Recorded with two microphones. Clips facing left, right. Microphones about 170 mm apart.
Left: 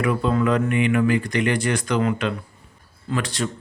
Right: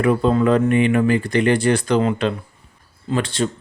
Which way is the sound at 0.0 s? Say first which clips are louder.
Right 4 dB; 35° right (ahead or behind).